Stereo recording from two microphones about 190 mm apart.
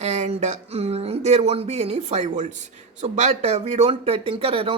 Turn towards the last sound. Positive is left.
turn(degrees=-30)  # may be behind; listen again after turning